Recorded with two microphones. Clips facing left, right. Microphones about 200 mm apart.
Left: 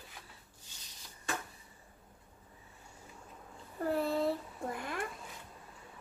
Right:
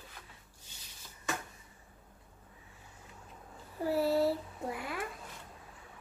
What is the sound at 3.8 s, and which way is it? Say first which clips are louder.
Speech: right 3 dB; 5° right (ahead or behind).